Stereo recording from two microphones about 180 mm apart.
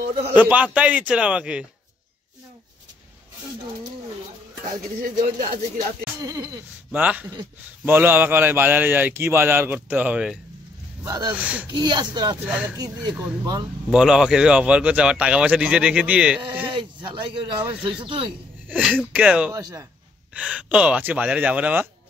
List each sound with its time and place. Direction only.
0.3 s a man's voice: 10° right (ahead or behind)
5.0 s speech: 50° right (ahead or behind)
6.2 s speech: 20° right (ahead or behind)
6.9 s a man's voice: 10° right (ahead or behind)
11.1 s speech: 20° right (ahead or behind)
11.3 s a man's voice: 5° right (ahead or behind)
11.7 s speech: 25° right (ahead or behind)
12.4 s a man's voice: 5° right (ahead or behind)
12.7 s speech: 20° right (ahead or behind)
13.1 s a man's voice: 10° right (ahead or behind)
16.6 s speech: 30° right (ahead or behind)
18.7 s a man's voice: 5° right (ahead or behind)
19.5 s a man's voice: 15° right (ahead or behind)
20.3 s a man's voice: 5° right (ahead or behind)